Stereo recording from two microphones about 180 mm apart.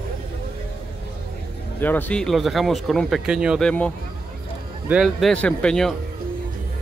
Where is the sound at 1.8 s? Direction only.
10° left (ahead or behind).